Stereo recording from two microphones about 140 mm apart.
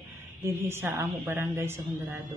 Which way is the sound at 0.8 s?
15° right (ahead or behind).